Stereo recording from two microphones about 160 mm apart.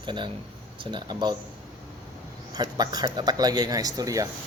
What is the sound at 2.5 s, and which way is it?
Speech, 25° right (ahead or behind).